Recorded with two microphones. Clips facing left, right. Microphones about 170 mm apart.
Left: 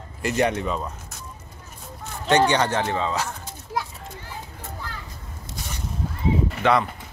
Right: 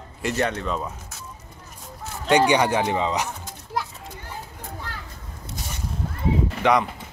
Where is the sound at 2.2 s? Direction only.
10° right (ahead or behind).